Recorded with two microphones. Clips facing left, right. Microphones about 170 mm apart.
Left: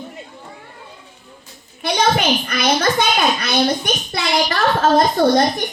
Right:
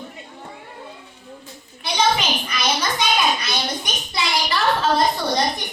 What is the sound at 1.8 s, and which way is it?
A child's voice, 55° left (ahead or behind).